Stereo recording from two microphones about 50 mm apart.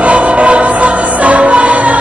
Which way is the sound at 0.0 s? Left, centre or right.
Right.